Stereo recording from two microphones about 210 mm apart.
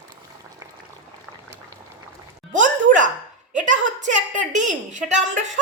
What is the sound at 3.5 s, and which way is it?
A woman's voice, 35° right (ahead or behind).